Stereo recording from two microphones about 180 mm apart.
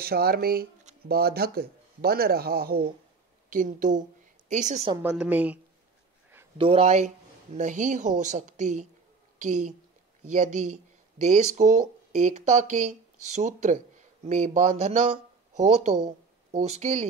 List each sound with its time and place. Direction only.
0.0 s speech: 60° right (ahead or behind); by 4.8 s 40° right (ahead or behind)
5.0 s a woman's voice: 5° right (ahead or behind)
6.6 s speech: 35° right (ahead or behind)